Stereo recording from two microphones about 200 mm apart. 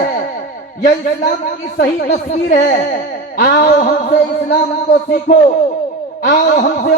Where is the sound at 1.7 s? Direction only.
40° left (ahead or behind).